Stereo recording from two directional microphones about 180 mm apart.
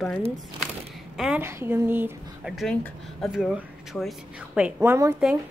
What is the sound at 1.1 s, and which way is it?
Speech, 5° right (ahead or behind).